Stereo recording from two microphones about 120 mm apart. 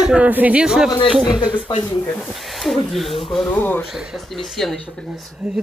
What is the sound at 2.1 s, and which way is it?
Speech, centre (ahead or behind).